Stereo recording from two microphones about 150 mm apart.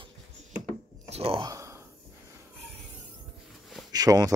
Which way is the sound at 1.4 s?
20° right (ahead or behind).